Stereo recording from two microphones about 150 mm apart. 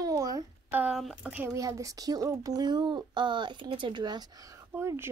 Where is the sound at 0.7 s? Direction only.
10° right (ahead or behind).